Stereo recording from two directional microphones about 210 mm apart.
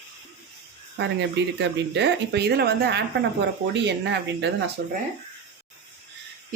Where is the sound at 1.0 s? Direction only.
55° right (ahead or behind).